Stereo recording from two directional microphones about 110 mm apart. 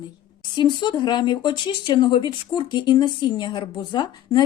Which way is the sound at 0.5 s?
45° left (ahead or behind).